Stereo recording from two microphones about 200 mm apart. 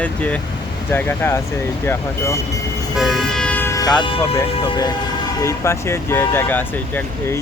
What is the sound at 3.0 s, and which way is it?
Vehicle, centre (ahead or behind).